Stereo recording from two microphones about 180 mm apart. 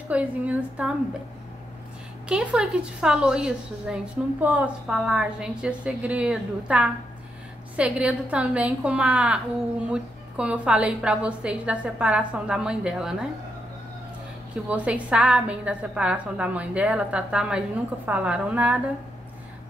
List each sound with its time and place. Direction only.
0.1 s a woman's voice: 10° right (ahead or behind)
2.2 s a woman's voice: 5° right (ahead or behind)
14.7 s a woman's voice: 5° right (ahead or behind)